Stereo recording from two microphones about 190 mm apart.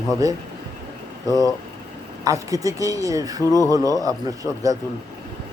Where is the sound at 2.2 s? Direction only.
15° right (ahead or behind).